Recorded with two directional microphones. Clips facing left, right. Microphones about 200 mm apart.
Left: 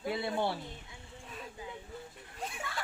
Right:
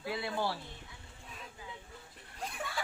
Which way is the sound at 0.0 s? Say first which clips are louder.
Left 3 dB; 25° left (ahead or behind).